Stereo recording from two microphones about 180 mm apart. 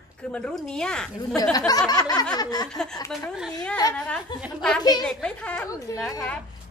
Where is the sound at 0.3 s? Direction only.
5° left (ahead or behind).